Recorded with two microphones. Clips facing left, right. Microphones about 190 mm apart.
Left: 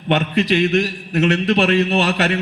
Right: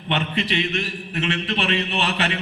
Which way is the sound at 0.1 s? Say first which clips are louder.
Left 7 dB; 40° left (ahead or behind).